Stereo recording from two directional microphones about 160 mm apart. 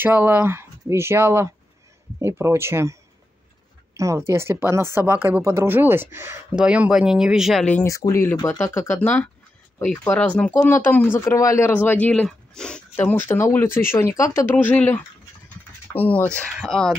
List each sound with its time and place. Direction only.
0.0 s speech: 10° right (ahead or behind)
7.8 s speech: 20° left (ahead or behind); by 16.9 s 5° left (ahead or behind)